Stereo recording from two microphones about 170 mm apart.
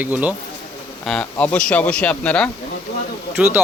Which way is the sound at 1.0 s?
5° left (ahead or behind).